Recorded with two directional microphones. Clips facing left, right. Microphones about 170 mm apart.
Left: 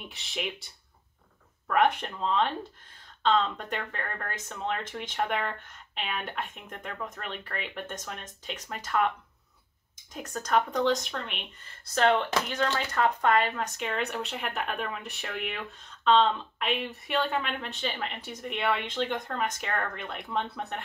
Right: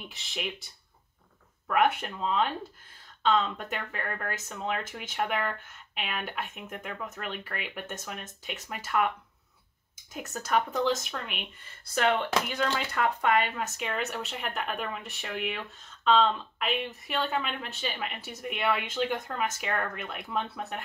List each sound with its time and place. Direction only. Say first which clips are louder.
0.1 s speech: left 2 dB; centre (ahead or behind)
1.7 s speech: left 1 dB; 5° right (ahead or behind)
10.1 s speech: left 1 dB; 5° right (ahead or behind)